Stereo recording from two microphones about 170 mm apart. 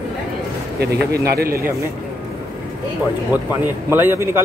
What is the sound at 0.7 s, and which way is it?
Speech, 70° right (ahead or behind).